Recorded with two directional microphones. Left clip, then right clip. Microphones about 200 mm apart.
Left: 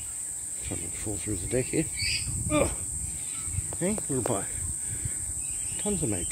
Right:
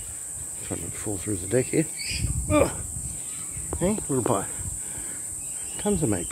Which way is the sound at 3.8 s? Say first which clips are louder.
Right 5 dB; 10° right (ahead or behind).